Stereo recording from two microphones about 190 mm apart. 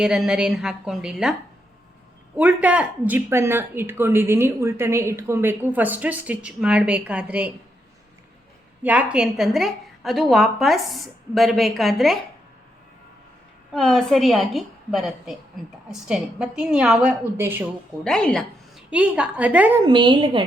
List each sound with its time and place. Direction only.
0.0 s a woman's voice: 5° right (ahead or behind)
8.8 s a woman's voice: 10° right (ahead or behind)
13.7 s a woman's voice: centre (ahead or behind)
18.0 s a woman's voice: 5° left (ahead or behind)
18.9 s speech: 5° right (ahead or behind)
19.9 s a woman's voice: 25° right (ahead or behind)